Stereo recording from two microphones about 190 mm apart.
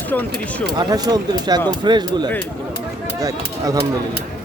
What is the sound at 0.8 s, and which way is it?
Speech, 20° right (ahead or behind).